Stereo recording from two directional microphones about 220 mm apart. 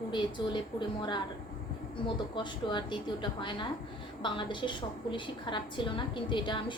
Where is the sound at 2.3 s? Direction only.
20° left (ahead or behind).